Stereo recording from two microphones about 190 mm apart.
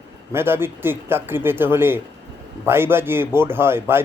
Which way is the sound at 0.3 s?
10° right (ahead or behind).